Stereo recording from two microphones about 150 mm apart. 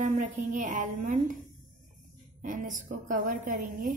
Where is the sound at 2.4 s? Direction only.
65° right (ahead or behind).